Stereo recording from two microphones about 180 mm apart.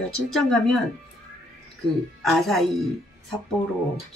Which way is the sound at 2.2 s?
Centre (ahead or behind).